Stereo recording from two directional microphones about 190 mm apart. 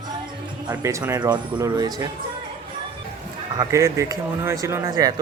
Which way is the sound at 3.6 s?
15° right (ahead or behind).